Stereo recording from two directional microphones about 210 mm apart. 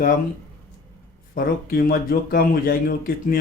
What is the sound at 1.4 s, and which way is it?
Speech, 45° left (ahead or behind).